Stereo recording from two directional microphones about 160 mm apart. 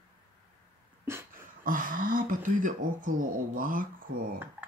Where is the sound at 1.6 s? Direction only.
60° right (ahead or behind).